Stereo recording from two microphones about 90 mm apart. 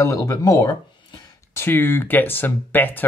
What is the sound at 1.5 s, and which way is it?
Speech, 25° left (ahead or behind).